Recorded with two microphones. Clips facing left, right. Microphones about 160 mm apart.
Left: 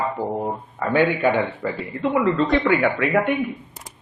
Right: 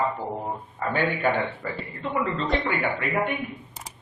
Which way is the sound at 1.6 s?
45° left (ahead or behind).